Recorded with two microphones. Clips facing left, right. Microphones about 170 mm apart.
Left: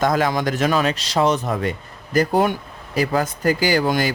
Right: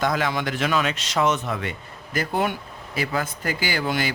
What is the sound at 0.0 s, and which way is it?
Speech, 45° left (ahead or behind).